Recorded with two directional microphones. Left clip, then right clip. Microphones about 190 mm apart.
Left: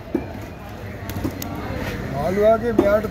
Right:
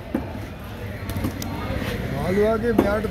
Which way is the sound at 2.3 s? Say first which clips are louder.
Left 4 dB; 50° left (ahead or behind).